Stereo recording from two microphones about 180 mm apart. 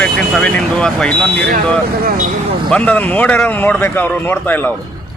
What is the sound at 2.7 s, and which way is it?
Speech, 10° left (ahead or behind).